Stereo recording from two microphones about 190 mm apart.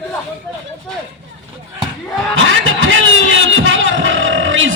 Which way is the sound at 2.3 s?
90° right.